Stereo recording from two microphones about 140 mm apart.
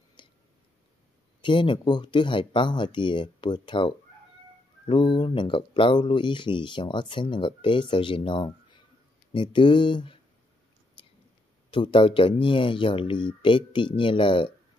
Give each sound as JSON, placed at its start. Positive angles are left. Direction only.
{"t": 0.2, "sound": "a sound", "side_deg": 35}
{"t": 1.4, "sound": "speech", "side_deg": 35}
{"t": 11.7, "sound": "speech", "side_deg": 35}